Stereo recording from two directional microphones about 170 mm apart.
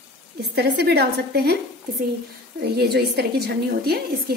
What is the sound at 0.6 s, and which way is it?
A woman's voice, 70° right (ahead or behind).